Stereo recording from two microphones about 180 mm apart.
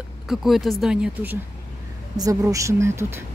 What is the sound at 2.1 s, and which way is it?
Speech, 20° right (ahead or behind).